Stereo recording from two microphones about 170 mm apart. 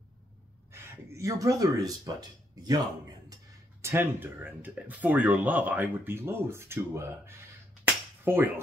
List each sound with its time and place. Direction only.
0.7 s speech: 15° right (ahead or behind)
3.8 s speech: 15° right (ahead or behind)
7.8 s finger snapping: 10° right (ahead or behind)